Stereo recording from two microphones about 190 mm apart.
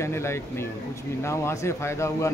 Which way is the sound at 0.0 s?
15° left (ahead or behind).